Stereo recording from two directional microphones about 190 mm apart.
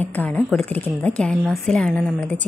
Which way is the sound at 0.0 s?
10° left (ahead or behind).